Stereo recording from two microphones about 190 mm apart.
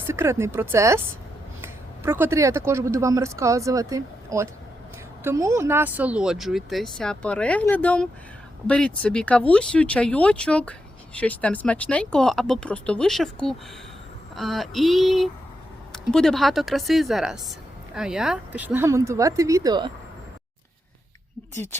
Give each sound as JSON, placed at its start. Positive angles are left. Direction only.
{"t": 0.1, "sound": "speech", "side_deg": -15}
{"t": 21.5, "sound": "speech", "side_deg": 10}